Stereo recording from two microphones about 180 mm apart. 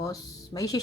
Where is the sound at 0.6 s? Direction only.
20° left (ahead or behind).